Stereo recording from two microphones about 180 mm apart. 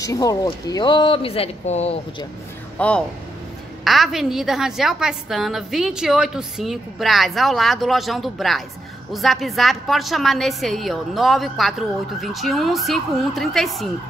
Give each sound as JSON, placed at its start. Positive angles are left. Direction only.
{"t": 0.0, "sound": "speech", "side_deg": 20}
{"t": 2.8, "sound": "a woman's voice", "side_deg": 10}